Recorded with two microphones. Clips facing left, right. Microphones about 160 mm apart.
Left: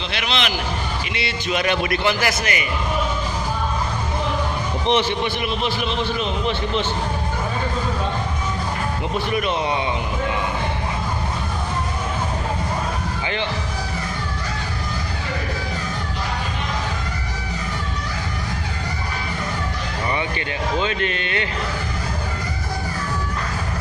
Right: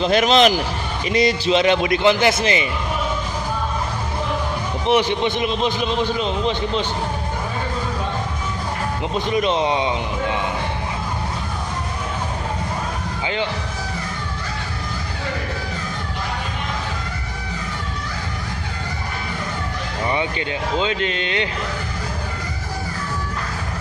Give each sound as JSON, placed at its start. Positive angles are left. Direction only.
{"t": 0.0, "sound": "a man's voice", "side_deg": -45}
{"t": 1.5, "sound": "speech", "side_deg": -20}
{"t": 4.8, "sound": "speech", "side_deg": -15}
{"t": 9.1, "sound": "speech", "side_deg": -25}
{"t": 20.1, "sound": "speech", "side_deg": -15}